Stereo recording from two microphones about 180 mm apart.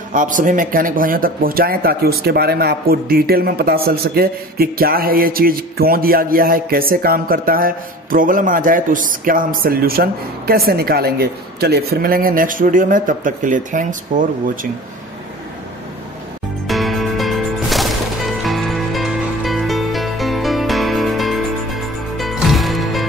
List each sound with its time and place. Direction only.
0.1 s speech: 45° right (ahead or behind)
16.6 s music: centre (ahead or behind)